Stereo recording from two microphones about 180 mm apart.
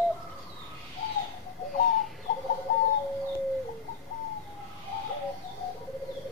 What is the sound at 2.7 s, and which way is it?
Bird, 50° left (ahead or behind).